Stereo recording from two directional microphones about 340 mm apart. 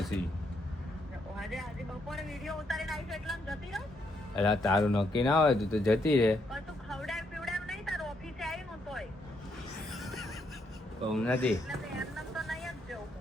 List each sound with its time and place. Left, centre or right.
1.4 s vehicle: centre
2.0 s speech: centre
5.2 s a sound: centre
11.1 s vehicle: centre